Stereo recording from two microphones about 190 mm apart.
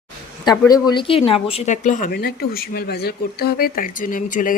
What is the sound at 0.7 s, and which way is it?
Speech, 20° left (ahead or behind).